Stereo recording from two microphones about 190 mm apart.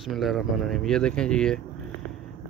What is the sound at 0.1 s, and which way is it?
Speech, centre (ahead or behind).